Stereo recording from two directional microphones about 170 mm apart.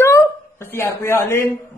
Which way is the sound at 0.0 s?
15° left (ahead or behind).